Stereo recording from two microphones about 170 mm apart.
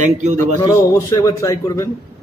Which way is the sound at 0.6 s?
20° left (ahead or behind).